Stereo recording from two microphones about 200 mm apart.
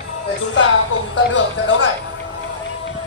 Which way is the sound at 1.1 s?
65° left (ahead or behind).